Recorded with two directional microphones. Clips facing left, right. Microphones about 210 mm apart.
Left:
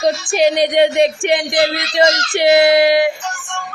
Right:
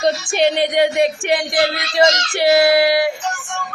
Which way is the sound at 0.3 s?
15° left (ahead or behind).